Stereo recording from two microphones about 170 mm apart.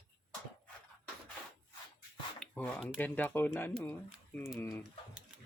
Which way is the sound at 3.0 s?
10° left (ahead or behind).